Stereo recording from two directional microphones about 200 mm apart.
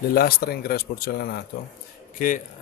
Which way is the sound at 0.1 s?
50° left (ahead or behind).